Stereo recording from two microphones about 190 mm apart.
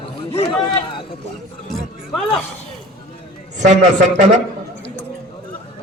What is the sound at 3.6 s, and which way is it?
Speech, 40° right (ahead or behind).